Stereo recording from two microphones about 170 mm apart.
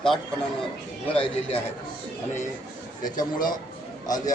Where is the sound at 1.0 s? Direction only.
30° left (ahead or behind).